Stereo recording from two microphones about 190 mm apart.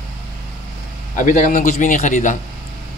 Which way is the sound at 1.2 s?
45° left (ahead or behind).